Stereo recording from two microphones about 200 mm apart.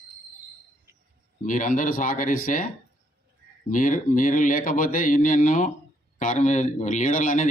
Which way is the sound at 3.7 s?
40° left (ahead or behind).